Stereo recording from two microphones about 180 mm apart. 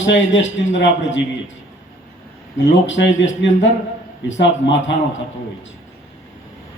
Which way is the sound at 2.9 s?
90° left.